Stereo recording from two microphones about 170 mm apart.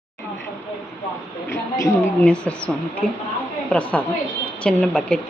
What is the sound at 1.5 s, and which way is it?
Speech, 15° left (ahead or behind).